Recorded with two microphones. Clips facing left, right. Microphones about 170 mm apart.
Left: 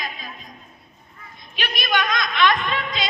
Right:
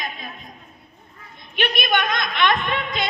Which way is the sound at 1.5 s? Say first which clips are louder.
Right 6 dB; 60° right (ahead or behind).